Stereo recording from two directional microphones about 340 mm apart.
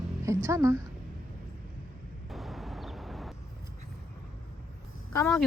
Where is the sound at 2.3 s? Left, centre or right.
Centre.